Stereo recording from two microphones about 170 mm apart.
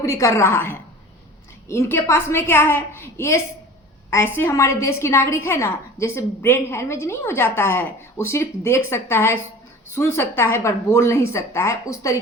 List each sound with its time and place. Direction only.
0.0 s a woman's voice: 20° left (ahead or behind)